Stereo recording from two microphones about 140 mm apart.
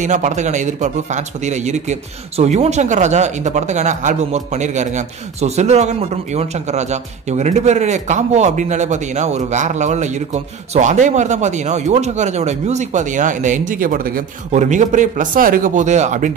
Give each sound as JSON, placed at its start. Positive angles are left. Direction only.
{"t": 0.0, "sound": "a man's voice", "side_deg": -60}
{"t": 14.5, "sound": "a man's voice", "side_deg": -60}